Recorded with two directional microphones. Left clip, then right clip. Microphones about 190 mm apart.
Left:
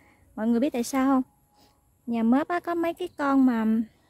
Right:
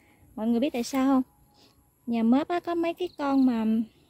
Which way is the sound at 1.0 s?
5° left (ahead or behind).